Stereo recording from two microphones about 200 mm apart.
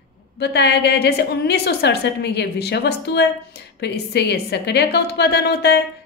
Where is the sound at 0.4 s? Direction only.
55° left (ahead or behind).